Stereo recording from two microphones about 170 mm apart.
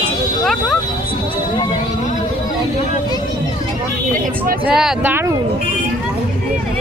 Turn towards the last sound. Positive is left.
turn(degrees=-5)  # may be behind; listen again after turning